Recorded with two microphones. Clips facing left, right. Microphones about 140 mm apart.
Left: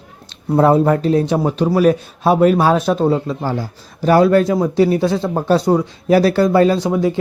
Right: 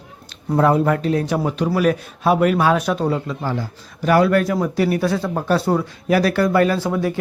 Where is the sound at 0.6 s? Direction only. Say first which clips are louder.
Left 4 dB; 30° left (ahead or behind).